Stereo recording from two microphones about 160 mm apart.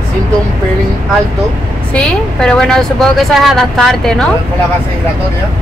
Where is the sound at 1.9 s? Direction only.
5° left (ahead or behind).